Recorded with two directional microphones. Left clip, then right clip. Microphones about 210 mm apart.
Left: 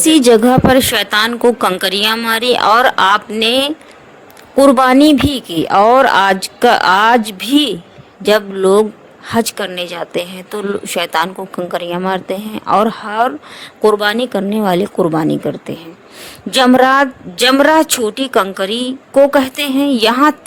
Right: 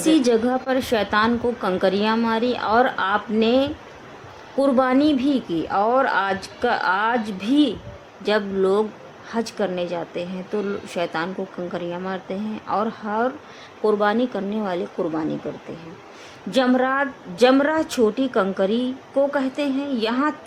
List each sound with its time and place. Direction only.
0.0 s speech: 45° left (ahead or behind)
16.5 s speech: 45° left (ahead or behind)